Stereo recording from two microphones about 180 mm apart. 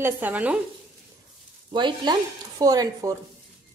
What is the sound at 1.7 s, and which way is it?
A woman's voice, 25° right (ahead or behind).